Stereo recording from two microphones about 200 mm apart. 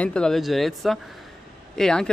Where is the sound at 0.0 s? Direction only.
5° left (ahead or behind).